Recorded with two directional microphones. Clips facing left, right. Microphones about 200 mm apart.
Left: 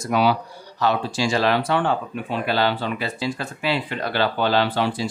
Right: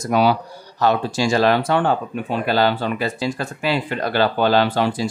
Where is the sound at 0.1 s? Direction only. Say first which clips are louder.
Right 2 dB; 45° right (ahead or behind).